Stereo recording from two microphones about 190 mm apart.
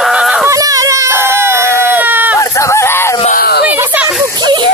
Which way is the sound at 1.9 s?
10° right (ahead or behind).